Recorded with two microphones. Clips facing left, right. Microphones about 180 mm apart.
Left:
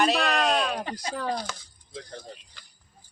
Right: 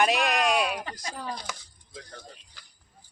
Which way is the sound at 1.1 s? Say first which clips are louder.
Left 8 dB; 70° left (ahead or behind).